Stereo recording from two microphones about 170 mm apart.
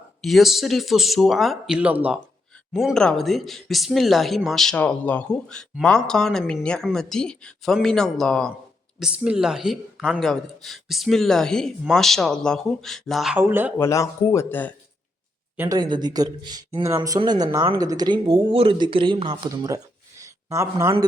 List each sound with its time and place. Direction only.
0.2 s speech: centre (ahead or behind)
13.4 s speech: 10° right (ahead or behind)
13.7 s speech: 15° left (ahead or behind)
15.5 s speech: 20° right (ahead or behind)